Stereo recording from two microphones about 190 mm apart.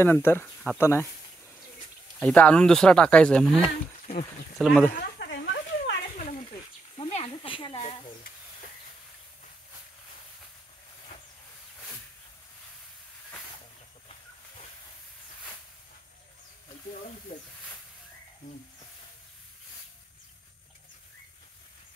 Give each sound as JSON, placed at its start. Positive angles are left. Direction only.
{"t": 0.0, "sound": "speech", "side_deg": 10}
{"t": 2.1, "sound": "speech", "side_deg": 5}
{"t": 3.6, "sound": "speech", "side_deg": 35}
{"t": 4.6, "sound": "speech", "side_deg": 0}
{"t": 5.2, "sound": "a sound", "side_deg": 60}
{"t": 7.0, "sound": "a sound", "side_deg": 30}